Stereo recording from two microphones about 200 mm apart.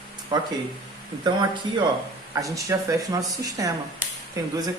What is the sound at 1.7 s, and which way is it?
Speech, 20° right (ahead or behind).